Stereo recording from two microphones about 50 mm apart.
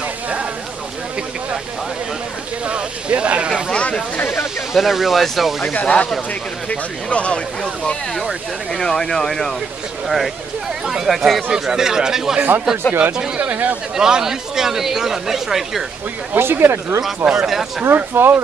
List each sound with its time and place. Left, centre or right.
2.6 s speech: right
4.7 s speech: centre
5.7 s speech: left
8.1 s speech: centre
12.4 s speech: right
13.9 s speech: centre
16.3 s speech: right
17.2 s speech: centre
17.5 s speech: centre
17.9 s speech: right